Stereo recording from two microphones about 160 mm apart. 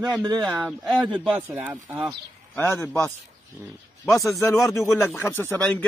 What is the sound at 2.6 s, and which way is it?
Speech, 15° left (ahead or behind).